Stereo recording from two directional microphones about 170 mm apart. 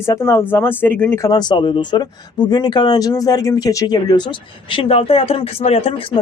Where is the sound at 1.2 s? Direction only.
25° left (ahead or behind).